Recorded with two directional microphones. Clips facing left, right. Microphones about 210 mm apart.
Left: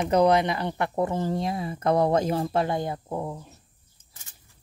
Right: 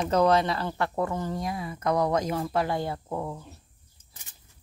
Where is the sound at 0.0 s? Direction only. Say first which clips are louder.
Left 2 dB; 15° left (ahead or behind).